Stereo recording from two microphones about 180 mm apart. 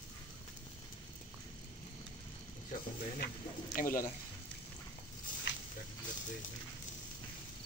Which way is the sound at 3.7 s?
50° left (ahead or behind).